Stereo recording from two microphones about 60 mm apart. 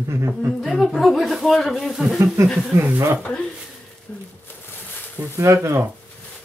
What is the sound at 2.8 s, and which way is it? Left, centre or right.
Speech, right.